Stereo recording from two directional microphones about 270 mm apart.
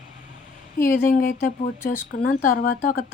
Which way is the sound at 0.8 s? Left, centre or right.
Left.